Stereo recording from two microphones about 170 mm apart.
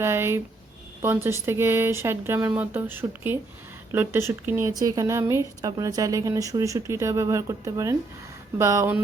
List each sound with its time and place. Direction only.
0.0 s speech: 15° right (ahead or behind)